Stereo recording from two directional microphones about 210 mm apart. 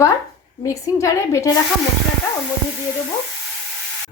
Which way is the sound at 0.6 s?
15° left (ahead or behind).